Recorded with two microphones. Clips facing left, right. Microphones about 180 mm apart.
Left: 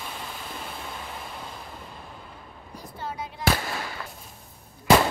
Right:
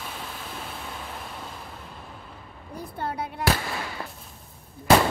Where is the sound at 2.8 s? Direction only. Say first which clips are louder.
Right 4 dB; 60° right (ahead or behind).